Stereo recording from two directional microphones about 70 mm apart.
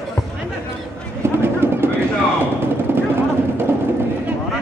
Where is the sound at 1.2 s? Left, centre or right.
Right.